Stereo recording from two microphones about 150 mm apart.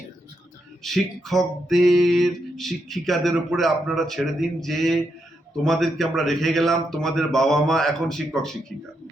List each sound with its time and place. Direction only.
0.8 s music: centre (ahead or behind)